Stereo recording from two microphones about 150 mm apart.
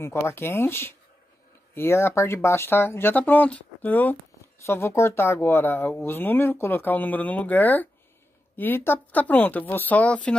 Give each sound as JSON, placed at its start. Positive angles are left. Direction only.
{"t": 0.0, "sound": "speech", "side_deg": 15}